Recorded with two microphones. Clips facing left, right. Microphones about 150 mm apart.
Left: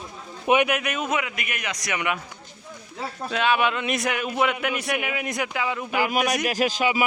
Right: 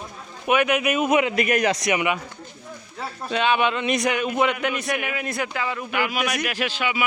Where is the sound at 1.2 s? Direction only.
35° right (ahead or behind).